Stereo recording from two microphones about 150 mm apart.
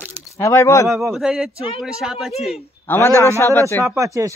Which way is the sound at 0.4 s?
20° left (ahead or behind).